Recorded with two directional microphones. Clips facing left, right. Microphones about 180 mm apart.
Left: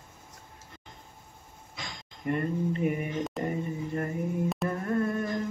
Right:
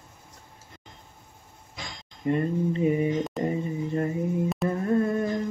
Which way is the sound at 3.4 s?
20° right (ahead or behind).